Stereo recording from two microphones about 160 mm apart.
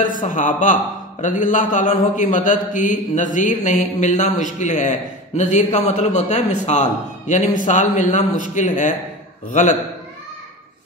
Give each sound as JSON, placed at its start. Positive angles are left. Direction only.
{"t": 0.0, "sound": "a man's voice", "side_deg": 55}